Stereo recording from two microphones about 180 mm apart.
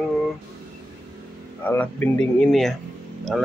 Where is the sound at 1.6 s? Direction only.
10° left (ahead or behind).